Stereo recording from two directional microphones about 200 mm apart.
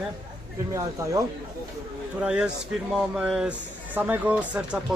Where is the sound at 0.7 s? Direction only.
15° right (ahead or behind).